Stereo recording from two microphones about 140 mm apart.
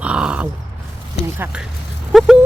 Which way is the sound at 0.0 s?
5° right (ahead or behind).